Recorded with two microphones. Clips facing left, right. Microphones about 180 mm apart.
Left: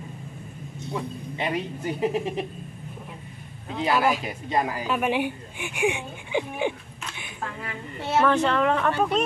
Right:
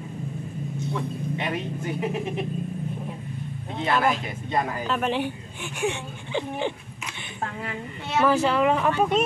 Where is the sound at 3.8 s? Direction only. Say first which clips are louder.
Left 1 dB; 10° left (ahead or behind).